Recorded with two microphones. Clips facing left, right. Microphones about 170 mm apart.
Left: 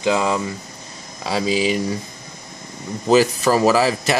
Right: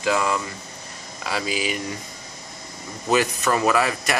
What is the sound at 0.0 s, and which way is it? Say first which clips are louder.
Speech: left 4 dB; 20° left (ahead or behind).